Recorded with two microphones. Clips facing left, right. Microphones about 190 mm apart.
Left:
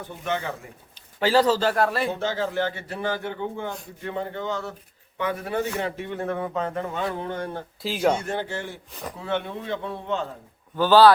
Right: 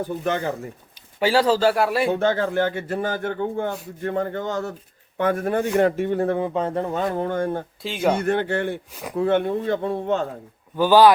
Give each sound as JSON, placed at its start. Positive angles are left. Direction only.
{"t": 0.0, "sound": "speech", "side_deg": -40}
{"t": 1.2, "sound": "speech", "side_deg": -10}
{"t": 2.0, "sound": "a man's voice", "side_deg": -55}
{"t": 7.8, "sound": "speech", "side_deg": 0}
{"t": 8.2, "sound": "a man's voice", "side_deg": -60}
{"t": 10.8, "sound": "speech", "side_deg": -15}